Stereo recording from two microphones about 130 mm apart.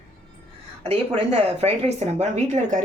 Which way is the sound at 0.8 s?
50° right (ahead or behind).